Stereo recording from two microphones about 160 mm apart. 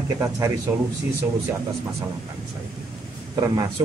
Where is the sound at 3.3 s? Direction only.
20° right (ahead or behind).